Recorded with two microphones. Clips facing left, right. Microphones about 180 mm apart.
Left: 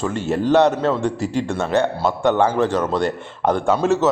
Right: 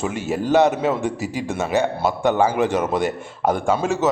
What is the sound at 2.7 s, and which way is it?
Speech, 20° right (ahead or behind).